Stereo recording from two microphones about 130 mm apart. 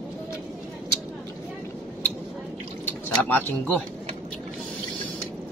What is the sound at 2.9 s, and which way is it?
Pigeon, 15° left (ahead or behind).